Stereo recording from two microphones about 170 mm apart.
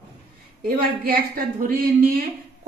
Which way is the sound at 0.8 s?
55° right (ahead or behind).